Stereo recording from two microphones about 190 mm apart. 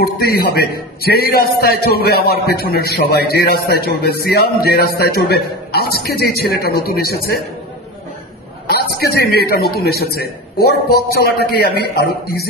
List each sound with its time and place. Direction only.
0.3 s a man's voice: 55° left (ahead or behind)
8.9 s a man's voice: 55° left (ahead or behind)